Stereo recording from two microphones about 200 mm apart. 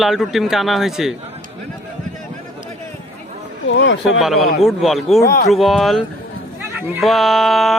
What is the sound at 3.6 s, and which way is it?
Speech, 65° left (ahead or behind).